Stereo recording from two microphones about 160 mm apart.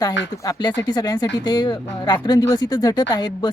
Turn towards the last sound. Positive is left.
turn(degrees=25)  # may be behind; listen again after turning